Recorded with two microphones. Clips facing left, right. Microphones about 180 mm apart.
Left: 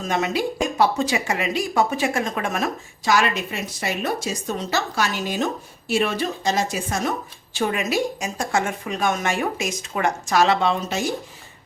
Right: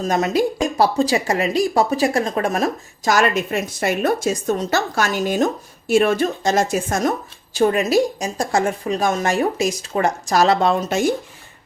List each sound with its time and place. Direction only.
0.0 s a woman's voice: 40° right (ahead or behind)
7.5 s speech: 35° right (ahead or behind)